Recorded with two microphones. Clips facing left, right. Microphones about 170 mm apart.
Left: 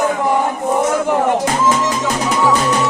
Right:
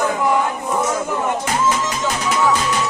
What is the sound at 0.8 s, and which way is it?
Speech, 65° left (ahead or behind).